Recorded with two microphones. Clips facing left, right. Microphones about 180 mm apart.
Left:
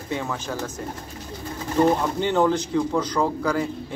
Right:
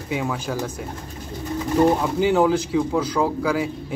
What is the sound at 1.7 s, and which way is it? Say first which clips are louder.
Speech: right 2 dB; 5° right (ahead or behind).